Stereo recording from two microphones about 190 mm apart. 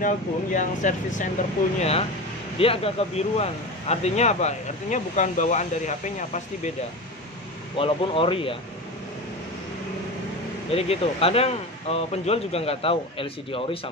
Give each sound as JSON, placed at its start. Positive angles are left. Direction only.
{"t": 0.0, "sound": "speech", "side_deg": 40}
{"t": 7.7, "sound": "speech", "side_deg": 30}
{"t": 10.7, "sound": "speech", "side_deg": 30}